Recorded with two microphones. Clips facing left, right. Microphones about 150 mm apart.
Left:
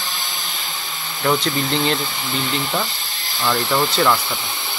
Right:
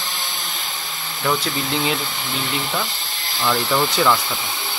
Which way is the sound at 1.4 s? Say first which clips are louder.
Left 3 dB; 5° right (ahead or behind).